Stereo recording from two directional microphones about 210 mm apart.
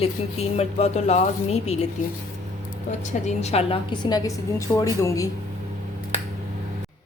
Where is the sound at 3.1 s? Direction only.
30° left (ahead or behind); by 5.3 s 15° left (ahead or behind).